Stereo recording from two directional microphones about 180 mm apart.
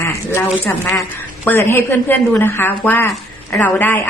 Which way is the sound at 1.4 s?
15° left (ahead or behind).